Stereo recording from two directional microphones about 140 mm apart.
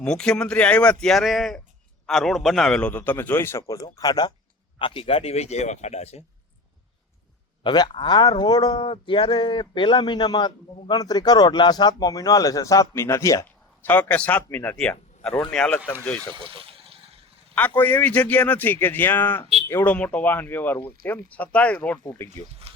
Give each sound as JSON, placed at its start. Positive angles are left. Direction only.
{"t": 0.0, "sound": "speech", "side_deg": 5}
{"t": 4.8, "sound": "speech", "side_deg": 40}
{"t": 7.6, "sound": "speech", "side_deg": 35}
{"t": 16.3, "sound": "water", "side_deg": -40}
{"t": 17.5, "sound": "speech", "side_deg": 10}
{"t": 22.0, "sound": "speech", "side_deg": 20}
{"t": 22.7, "sound": "speech", "side_deg": -45}